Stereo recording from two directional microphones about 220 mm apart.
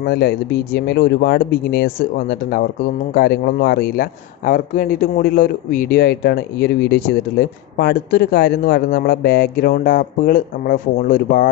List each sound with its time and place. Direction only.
0.0 s a man's voice: 45° left (ahead or behind)